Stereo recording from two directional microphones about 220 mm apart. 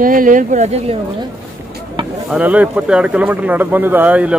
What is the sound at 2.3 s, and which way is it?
Speech, 5° right (ahead or behind).